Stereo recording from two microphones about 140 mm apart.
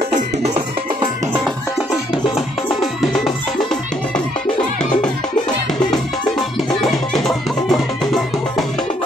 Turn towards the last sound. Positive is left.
turn(degrees=0)  # may be behind; listen again after turning